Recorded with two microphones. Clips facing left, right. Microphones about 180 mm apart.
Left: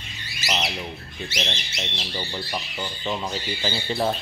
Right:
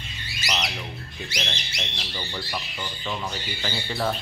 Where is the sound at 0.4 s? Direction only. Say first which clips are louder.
Left 2 dB; 25° left (ahead or behind).